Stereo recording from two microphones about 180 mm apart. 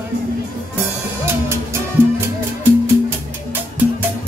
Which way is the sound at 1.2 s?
15° right (ahead or behind).